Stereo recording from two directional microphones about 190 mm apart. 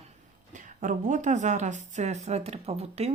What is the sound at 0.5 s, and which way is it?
Speech, 45° right (ahead or behind).